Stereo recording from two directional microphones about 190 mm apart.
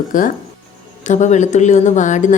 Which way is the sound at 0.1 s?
45° left (ahead or behind).